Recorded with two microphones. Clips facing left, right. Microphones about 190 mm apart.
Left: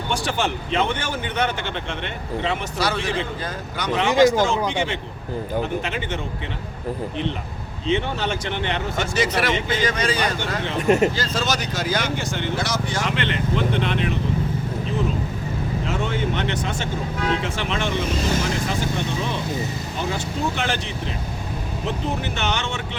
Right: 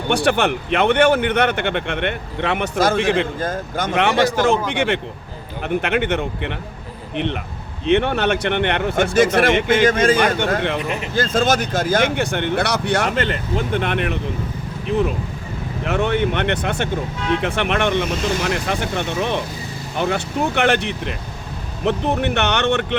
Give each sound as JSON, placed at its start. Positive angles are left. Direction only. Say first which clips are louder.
{"t": 0.1, "sound": "speech", "louder": "right 7 dB", "side_deg": -65}
{"t": 7.9, "sound": "speech", "louder": "right 6 dB", "side_deg": -65}
{"t": 10.8, "sound": "speech", "louder": "left 7 dB", "side_deg": 45}
{"t": 11.1, "sound": "speech", "louder": "right 7 dB", "side_deg": -55}
{"t": 13.1, "sound": "speech", "louder": "right 2 dB", "side_deg": -45}